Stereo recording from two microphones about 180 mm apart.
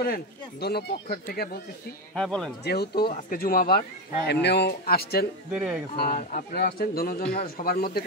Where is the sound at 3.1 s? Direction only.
50° left (ahead or behind).